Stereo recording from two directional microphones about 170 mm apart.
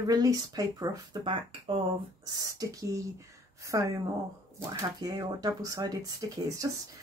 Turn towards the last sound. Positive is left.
turn(degrees=-20)  # may be behind; listen again after turning